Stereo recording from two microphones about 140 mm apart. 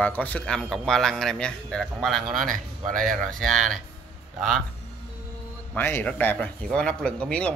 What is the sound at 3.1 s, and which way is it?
Speech, 5° left (ahead or behind).